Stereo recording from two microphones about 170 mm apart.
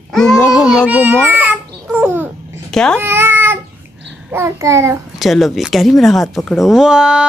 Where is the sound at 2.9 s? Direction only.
10° right (ahead or behind).